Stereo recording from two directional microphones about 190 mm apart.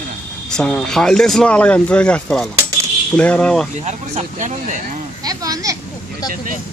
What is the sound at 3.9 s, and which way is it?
Speech, 35° right (ahead or behind).